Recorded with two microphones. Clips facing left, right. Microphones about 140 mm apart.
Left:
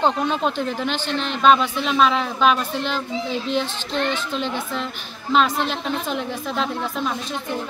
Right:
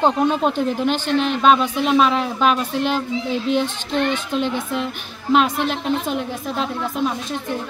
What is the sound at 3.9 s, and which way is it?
Speech, 50° right (ahead or behind).